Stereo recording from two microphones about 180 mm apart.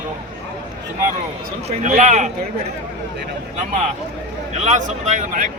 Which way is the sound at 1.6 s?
40° right (ahead or behind).